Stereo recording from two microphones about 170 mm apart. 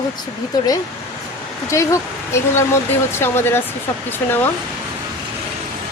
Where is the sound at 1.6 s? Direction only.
15° left (ahead or behind).